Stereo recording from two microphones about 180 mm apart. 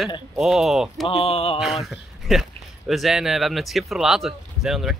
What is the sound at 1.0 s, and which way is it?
Speech, 35° left (ahead or behind).